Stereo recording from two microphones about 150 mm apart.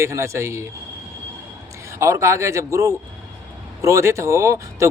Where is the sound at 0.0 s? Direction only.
20° right (ahead or behind).